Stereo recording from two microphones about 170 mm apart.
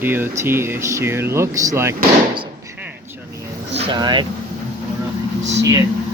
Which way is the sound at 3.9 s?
25° right (ahead or behind).